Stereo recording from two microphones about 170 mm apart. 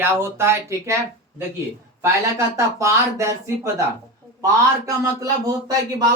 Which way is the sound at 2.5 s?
15° right (ahead or behind).